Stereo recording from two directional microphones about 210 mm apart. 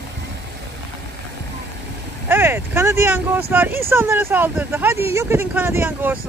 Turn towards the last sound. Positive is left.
turn(degrees=-10)  # may be behind; listen again after turning